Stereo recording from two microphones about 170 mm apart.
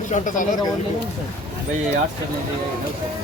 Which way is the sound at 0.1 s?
50° left (ahead or behind).